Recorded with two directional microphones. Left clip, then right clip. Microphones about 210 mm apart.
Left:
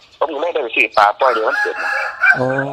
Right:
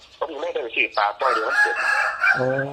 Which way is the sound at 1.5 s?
5° right (ahead or behind).